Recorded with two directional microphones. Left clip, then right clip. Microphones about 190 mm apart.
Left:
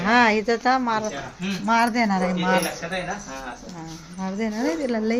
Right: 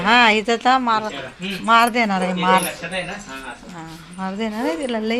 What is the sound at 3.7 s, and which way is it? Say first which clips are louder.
Speech: right 3 dB; centre (ahead or behind).